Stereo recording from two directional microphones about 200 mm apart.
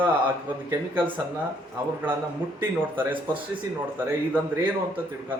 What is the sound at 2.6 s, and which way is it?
Speech, 10° right (ahead or behind).